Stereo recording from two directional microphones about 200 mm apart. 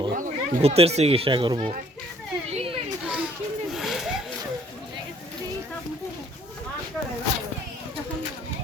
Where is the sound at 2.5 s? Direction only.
25° right (ahead or behind).